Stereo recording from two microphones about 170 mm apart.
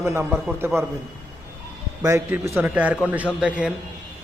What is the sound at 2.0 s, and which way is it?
A man's voice, 15° right (ahead or behind).